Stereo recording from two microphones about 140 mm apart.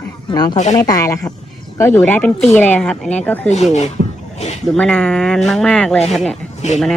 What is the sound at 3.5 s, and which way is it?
Speech, 55° left (ahead or behind).